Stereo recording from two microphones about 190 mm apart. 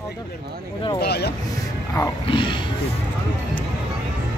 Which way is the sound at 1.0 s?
60° left (ahead or behind).